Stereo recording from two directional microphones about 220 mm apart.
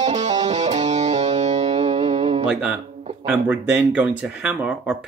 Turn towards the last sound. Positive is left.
turn(degrees=-5)  # may be behind; listen again after turning